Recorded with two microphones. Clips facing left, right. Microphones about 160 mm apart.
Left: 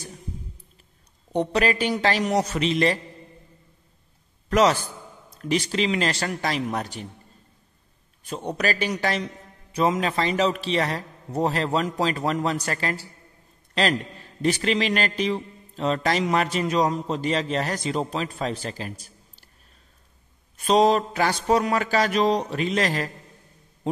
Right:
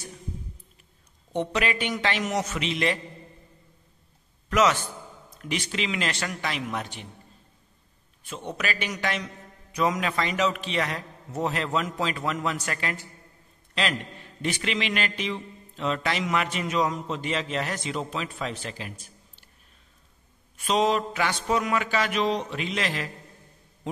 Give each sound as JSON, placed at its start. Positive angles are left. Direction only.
{"t": 1.3, "sound": "a man's voice", "side_deg": 35}
{"t": 4.5, "sound": "a man's voice", "side_deg": 35}
{"t": 8.2, "sound": "a man's voice", "side_deg": 40}
{"t": 14.4, "sound": "a man's voice", "side_deg": 40}
{"t": 20.5, "sound": "a man's voice", "side_deg": 35}